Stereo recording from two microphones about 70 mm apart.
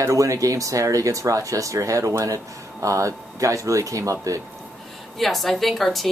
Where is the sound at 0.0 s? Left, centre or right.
Right.